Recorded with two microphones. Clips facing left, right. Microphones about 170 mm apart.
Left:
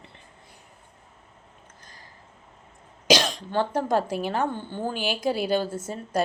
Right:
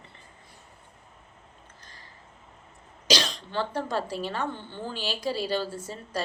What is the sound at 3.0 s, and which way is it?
A woman's voice, 50° left (ahead or behind).